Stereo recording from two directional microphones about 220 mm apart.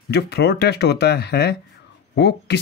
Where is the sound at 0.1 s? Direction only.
50° left (ahead or behind).